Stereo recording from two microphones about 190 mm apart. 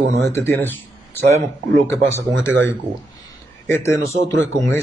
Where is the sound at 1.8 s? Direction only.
15° left (ahead or behind).